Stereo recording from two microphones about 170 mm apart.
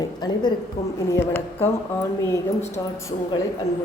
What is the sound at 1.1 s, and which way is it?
Speech, 15° left (ahead or behind).